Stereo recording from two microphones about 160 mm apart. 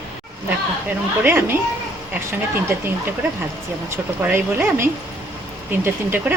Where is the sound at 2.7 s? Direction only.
15° right (ahead or behind).